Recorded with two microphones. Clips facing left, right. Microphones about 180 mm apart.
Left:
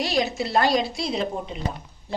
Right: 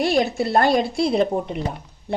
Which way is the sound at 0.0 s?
55° right (ahead or behind).